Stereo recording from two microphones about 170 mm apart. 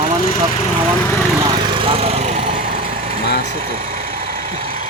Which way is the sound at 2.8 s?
35° right (ahead or behind).